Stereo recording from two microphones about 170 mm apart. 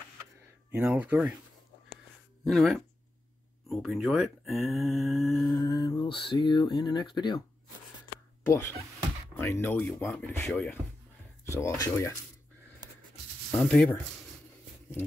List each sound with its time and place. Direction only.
0.7 s speech: 10° right (ahead or behind)
2.4 s speech: centre (ahead or behind)
5.6 s speech: 20° left (ahead or behind)
9.4 s speech: 15° left (ahead or behind)
13.6 s speech: 5° left (ahead or behind)